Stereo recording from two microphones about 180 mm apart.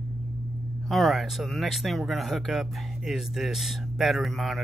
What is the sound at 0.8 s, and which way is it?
Speech, centre (ahead or behind).